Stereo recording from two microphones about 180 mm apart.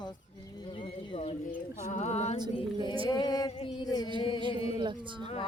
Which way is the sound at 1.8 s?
40° left (ahead or behind).